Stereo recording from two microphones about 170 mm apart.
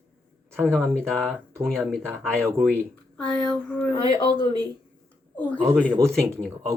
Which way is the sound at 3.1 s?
5° left (ahead or behind).